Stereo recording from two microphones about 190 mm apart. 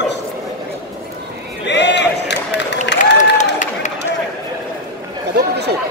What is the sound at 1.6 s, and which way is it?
Run, 65° left (ahead or behind).